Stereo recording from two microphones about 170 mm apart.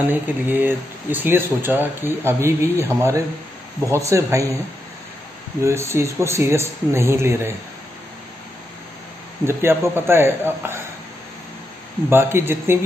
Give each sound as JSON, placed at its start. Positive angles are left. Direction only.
{"t": 0.1, "sound": "speech", "side_deg": -10}
{"t": 5.6, "sound": "speech", "side_deg": -15}
{"t": 9.5, "sound": "speech", "side_deg": -15}
{"t": 12.1, "sound": "speech", "side_deg": -15}